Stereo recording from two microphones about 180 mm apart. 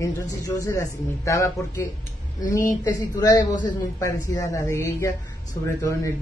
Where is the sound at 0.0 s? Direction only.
15° left (ahead or behind).